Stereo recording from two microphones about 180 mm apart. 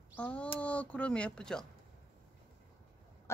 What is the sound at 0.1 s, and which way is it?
Speech, 5° left (ahead or behind).